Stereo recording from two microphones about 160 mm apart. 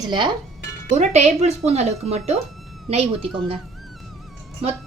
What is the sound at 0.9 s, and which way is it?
Speech, 45° right (ahead or behind).